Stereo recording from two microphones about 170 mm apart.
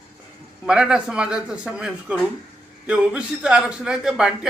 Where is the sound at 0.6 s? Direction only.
5° right (ahead or behind).